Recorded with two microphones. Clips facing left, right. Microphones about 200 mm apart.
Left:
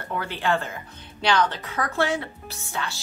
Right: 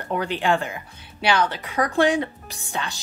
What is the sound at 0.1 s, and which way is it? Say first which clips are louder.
Speech: right 3 dB; 15° right (ahead or behind).